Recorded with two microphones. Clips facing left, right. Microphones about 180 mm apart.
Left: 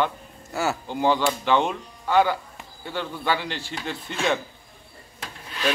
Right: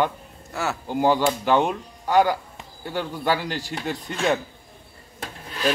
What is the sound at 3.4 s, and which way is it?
Speech, 40° right (ahead or behind).